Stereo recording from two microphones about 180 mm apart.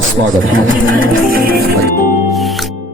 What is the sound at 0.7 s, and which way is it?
Music, 50° right (ahead or behind).